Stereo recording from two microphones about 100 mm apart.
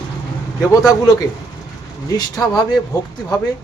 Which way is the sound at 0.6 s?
35° left (ahead or behind).